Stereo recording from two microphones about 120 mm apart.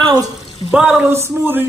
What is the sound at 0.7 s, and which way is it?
Speech, 10° right (ahead or behind).